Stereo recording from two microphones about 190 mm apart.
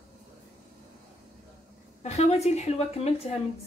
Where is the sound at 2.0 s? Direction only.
35° left (ahead or behind).